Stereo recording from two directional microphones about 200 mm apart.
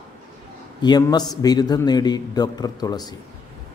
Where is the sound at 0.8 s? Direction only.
20° left (ahead or behind).